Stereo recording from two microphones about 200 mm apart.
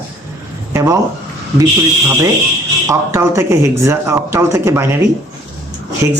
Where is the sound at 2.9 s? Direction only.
15° right (ahead or behind).